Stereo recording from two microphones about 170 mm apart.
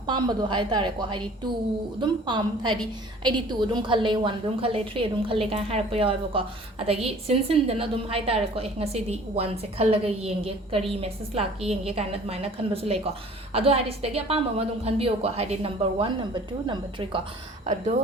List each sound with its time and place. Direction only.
0.1 s a woman's voice: 25° right (ahead or behind)